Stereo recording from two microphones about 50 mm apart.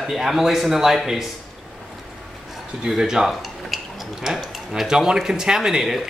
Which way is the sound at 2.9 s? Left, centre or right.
Centre.